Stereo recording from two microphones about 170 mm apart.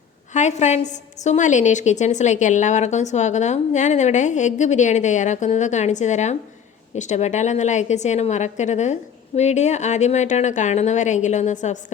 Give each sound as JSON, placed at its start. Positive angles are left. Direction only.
{"t": 0.3, "sound": "a woman's voice", "side_deg": 45}